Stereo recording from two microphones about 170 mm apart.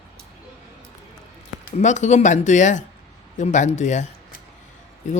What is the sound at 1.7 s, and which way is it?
Speech, 45° left (ahead or behind).